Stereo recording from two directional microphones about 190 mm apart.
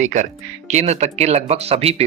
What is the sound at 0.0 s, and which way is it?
Speech, 40° right (ahead or behind).